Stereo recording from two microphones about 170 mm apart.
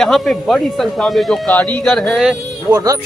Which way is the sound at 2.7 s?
20° right (ahead or behind).